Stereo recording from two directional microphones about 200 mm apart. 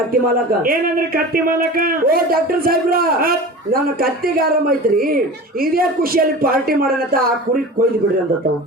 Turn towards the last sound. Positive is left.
turn(degrees=-45)  # may be behind; listen again after turning